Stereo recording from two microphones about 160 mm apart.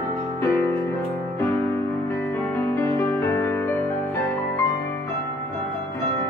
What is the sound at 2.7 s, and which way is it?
Music, 15° left (ahead or behind).